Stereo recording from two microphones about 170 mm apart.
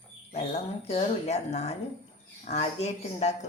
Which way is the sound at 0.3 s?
35° left (ahead or behind).